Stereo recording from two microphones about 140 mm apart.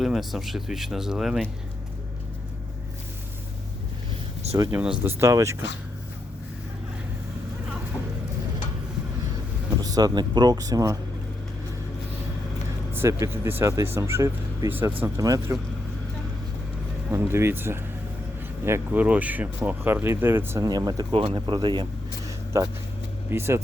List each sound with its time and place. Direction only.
0.0 s speech: centre (ahead or behind)
4.7 s speech: 10° right (ahead or behind)
9.8 s speech: 25° right (ahead or behind)
12.9 s speech: 20° right (ahead or behind)
17.1 s speech: 15° right (ahead or behind)
20.6 s speech: 30° right (ahead or behind)
22.5 s speech: 20° right (ahead or behind)